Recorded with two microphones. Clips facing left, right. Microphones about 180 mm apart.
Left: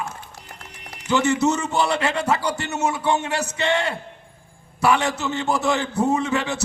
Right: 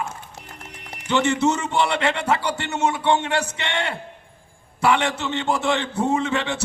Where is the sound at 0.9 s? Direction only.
30° right (ahead or behind).